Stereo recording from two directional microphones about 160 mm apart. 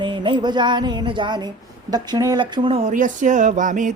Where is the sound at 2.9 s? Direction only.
50° right (ahead or behind).